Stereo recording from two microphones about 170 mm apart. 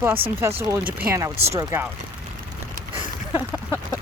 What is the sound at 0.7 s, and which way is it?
Speech, 10° right (ahead or behind).